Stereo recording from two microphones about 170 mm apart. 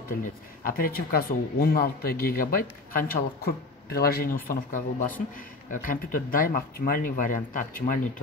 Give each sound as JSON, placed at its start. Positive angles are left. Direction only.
{"t": 0.2, "sound": "speech", "side_deg": 55}